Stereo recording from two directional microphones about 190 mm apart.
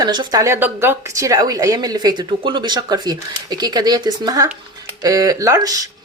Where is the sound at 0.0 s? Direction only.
20° right (ahead or behind).